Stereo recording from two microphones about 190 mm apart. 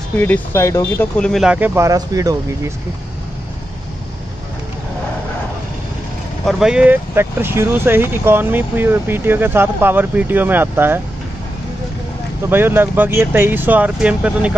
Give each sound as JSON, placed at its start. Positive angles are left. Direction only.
{"t": 0.2, "sound": "speech", "side_deg": 10}
{"t": 1.3, "sound": "speech", "side_deg": -5}
{"t": 6.4, "sound": "speech", "side_deg": -5}
{"t": 12.4, "sound": "speech", "side_deg": -10}